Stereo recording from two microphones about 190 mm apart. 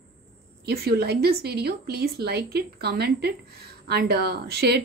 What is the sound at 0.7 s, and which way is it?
Speech, 55° right (ahead or behind).